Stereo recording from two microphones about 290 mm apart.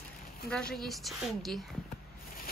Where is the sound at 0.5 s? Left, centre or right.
Centre.